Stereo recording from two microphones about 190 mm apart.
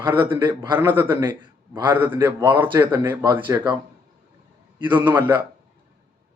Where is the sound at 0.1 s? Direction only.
10° right (ahead or behind).